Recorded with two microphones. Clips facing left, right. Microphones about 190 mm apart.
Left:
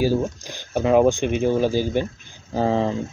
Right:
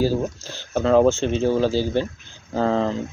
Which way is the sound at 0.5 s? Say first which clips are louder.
Right 1 dB; 15° left (ahead or behind).